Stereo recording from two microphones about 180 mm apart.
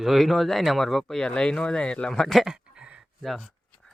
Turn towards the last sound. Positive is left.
turn(degrees=0)  # may be behind; listen again after turning